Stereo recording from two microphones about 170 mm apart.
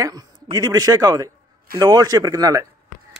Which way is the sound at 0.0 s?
20° right (ahead or behind).